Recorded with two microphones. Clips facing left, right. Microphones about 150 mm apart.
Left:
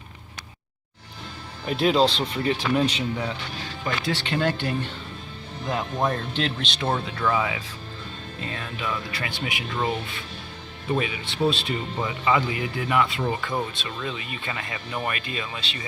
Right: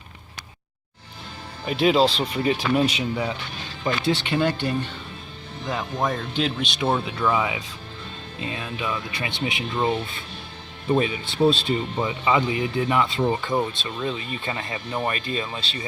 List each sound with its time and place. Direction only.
1.6 s speech: centre (ahead or behind)
4.4 s speech: centre (ahead or behind)
6.8 s speech: 15° right (ahead or behind)
10.9 s speech: 35° right (ahead or behind)
12.0 s speech: 20° right (ahead or behind)